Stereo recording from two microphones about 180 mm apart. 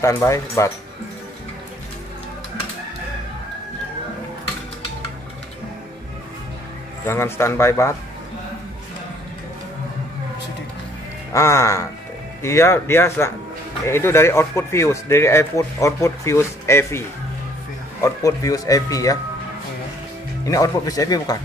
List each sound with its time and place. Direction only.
0.0 s speech: 15° left (ahead or behind)
7.1 s speech: 15° left (ahead or behind)
11.3 s speech: 15° left (ahead or behind)
18.0 s speech: 20° left (ahead or behind)
20.4 s speech: 20° left (ahead or behind)